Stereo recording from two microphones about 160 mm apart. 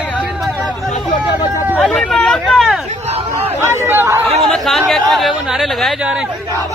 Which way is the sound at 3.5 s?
15° right (ahead or behind).